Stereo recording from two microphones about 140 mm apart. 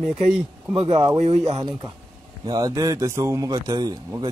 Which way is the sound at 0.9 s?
50° right (ahead or behind).